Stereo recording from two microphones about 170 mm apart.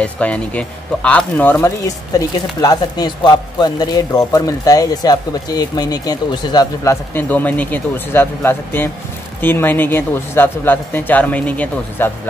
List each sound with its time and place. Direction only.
0.0 s speech: 5° left (ahead or behind)
2.1 s speech: 20° left (ahead or behind)